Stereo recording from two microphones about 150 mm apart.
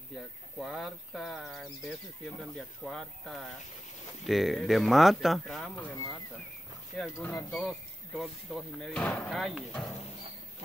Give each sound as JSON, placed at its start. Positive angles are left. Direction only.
{"t": 0.6, "sound": "a sound", "side_deg": 0}
{"t": 2.5, "sound": "speech", "side_deg": 5}
{"t": 5.9, "sound": "speech", "side_deg": 15}
{"t": 7.2, "sound": "speech", "side_deg": 15}
{"t": 8.2, "sound": "speech", "side_deg": 0}